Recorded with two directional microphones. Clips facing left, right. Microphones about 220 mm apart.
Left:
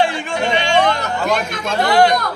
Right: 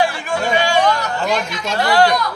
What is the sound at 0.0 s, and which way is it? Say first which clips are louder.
Chatter: left 1 dB; 25° left (ahead or behind).